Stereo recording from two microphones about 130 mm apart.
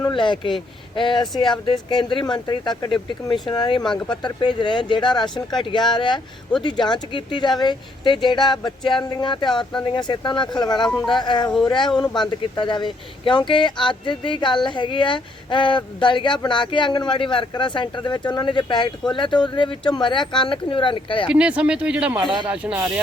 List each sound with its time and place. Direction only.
0.1 s a man's voice: 35° left (ahead or behind)
3.8 s speech: 5° left (ahead or behind)
4.2 s a woman's voice: 35° left (ahead or behind)
10.8 s speech: 5° left (ahead or behind)
11.2 s a woman's voice: 35° left (ahead or behind)
21.2 s speech: 10° right (ahead or behind)
22.2 s speech: 35° right (ahead or behind)
22.4 s speech: 10° right (ahead or behind)